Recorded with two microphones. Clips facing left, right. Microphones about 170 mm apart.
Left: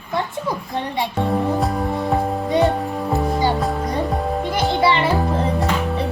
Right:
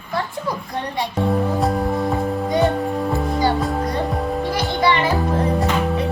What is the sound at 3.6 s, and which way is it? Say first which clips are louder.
Music: even; centre (ahead or behind).